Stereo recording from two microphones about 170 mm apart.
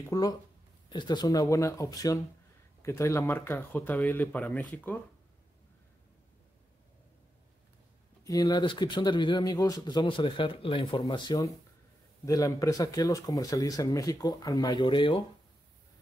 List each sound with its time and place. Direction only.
0.1 s speech: 20° left (ahead or behind)
8.2 s speech: 20° left (ahead or behind)